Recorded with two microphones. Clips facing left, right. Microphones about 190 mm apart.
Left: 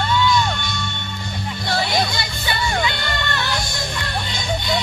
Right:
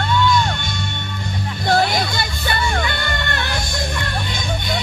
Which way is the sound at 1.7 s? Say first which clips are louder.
Right 4 dB; 50° right (ahead or behind).